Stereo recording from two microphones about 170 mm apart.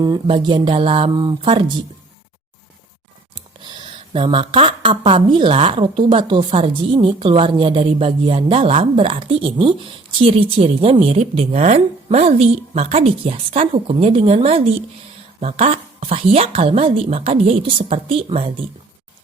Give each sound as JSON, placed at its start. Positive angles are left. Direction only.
{"t": 0.3, "sound": "speech", "side_deg": -30}
{"t": 3.3, "sound": "speech", "side_deg": -25}